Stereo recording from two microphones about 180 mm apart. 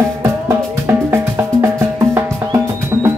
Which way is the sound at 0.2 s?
15° right (ahead or behind).